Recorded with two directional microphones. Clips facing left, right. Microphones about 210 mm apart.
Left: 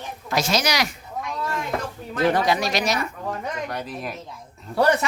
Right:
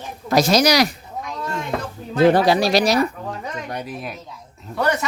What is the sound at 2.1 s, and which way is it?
Speech, 30° right (ahead or behind).